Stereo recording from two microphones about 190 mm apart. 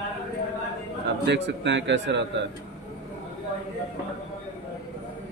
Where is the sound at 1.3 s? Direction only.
70° right (ahead or behind).